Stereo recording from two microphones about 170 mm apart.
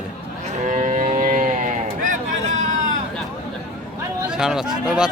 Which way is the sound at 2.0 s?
45° right (ahead or behind).